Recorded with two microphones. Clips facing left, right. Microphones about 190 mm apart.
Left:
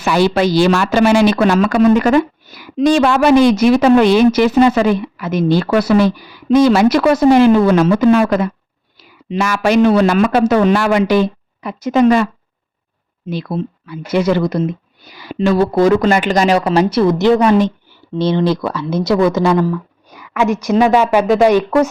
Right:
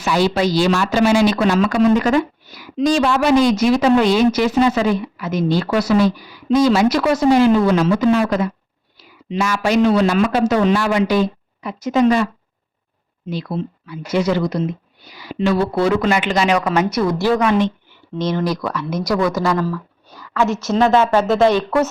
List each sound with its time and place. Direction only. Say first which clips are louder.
0.0 s a woman's voice: left 3 dB; 60° left (ahead or behind)
13.3 s a woman's voice: left 3 dB; 55° left (ahead or behind)
15.4 s speech: left 4 dB; 40° left (ahead or behind); by 17.4 s 25° left (ahead or behind)
17.4 s speech: left 4 dB; 35° left (ahead or behind); by 21.8 s 15° left (ahead or behind)